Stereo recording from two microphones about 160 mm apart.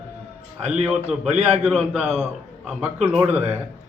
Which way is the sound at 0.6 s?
10° right (ahead or behind).